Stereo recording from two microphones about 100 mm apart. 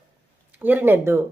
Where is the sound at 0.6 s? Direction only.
20° right (ahead or behind).